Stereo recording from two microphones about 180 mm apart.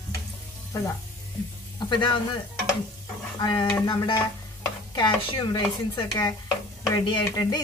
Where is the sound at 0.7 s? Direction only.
20° left (ahead or behind).